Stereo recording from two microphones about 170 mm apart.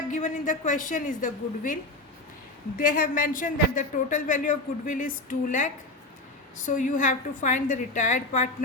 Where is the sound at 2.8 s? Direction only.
55° left (ahead or behind).